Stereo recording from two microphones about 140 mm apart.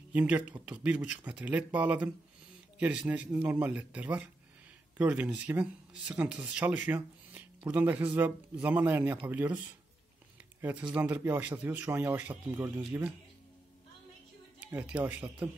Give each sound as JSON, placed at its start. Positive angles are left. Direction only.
{"t": 0.1, "sound": "speech", "side_deg": -10}
{"t": 10.9, "sound": "speech", "side_deg": -10}
{"t": 14.6, "sound": "speech", "side_deg": -10}